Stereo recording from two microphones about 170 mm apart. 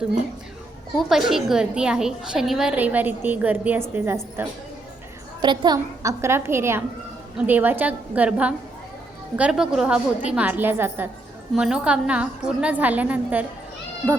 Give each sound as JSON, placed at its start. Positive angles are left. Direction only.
{"t": 0.9, "sound": "a woman's voice", "side_deg": 0}
{"t": 5.4, "sound": "a woman's voice", "side_deg": -25}